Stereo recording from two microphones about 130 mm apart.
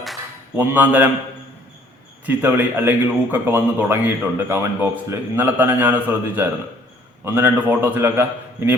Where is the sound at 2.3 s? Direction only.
15° right (ahead or behind).